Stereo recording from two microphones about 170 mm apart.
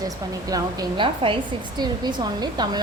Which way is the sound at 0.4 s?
20° right (ahead or behind).